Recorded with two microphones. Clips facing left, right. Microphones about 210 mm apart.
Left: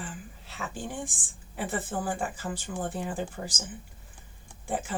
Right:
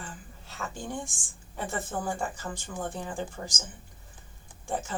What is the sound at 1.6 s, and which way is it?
Speech, 10° left (ahead or behind).